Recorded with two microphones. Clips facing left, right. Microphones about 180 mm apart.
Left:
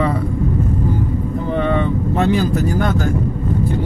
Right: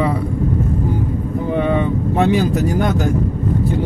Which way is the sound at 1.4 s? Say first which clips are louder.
Right 1 dB; 15° right (ahead or behind).